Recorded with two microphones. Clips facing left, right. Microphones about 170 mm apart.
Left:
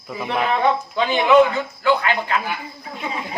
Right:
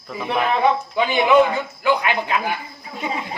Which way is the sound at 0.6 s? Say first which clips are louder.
Right 1 dB; 10° right (ahead or behind).